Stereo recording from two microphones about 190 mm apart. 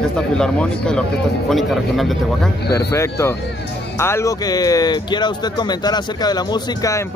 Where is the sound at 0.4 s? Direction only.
5° left (ahead or behind).